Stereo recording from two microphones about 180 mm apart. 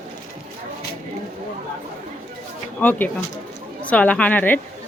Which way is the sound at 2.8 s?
10° left (ahead or behind).